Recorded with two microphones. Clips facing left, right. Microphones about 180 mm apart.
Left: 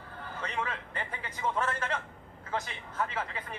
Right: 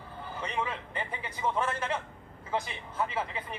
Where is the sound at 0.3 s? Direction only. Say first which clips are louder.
Right 2 dB; 10° right (ahead or behind).